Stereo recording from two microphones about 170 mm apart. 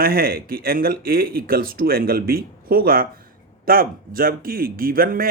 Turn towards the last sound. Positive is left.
turn(degrees=-60)  # may be behind; listen again after turning